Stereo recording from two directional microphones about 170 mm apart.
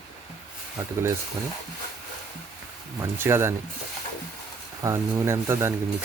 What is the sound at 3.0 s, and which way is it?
Speech, 15° right (ahead or behind).